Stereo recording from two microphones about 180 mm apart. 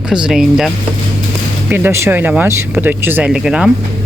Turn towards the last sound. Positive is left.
turn(degrees=-5)  # may be behind; listen again after turning